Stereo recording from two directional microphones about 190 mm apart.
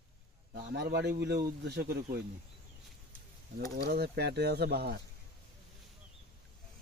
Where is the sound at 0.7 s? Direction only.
60° right (ahead or behind).